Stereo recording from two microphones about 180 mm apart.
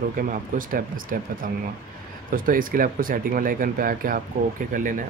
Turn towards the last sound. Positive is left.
turn(degrees=-50)  # may be behind; listen again after turning